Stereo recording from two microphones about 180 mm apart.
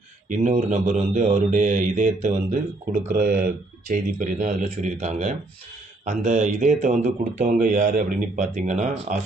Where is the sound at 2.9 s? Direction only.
55° right (ahead or behind).